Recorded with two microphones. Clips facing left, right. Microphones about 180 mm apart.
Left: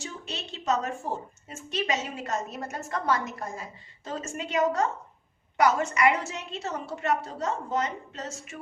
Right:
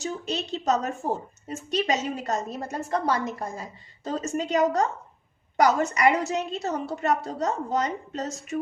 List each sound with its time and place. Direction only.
0.0 s a woman's voice: 40° right (ahead or behind)